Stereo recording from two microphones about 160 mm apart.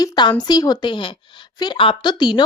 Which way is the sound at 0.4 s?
25° left (ahead or behind).